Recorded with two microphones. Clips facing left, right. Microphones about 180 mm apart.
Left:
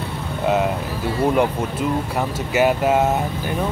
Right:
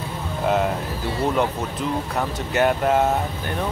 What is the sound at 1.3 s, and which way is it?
Speech, 10° left (ahead or behind).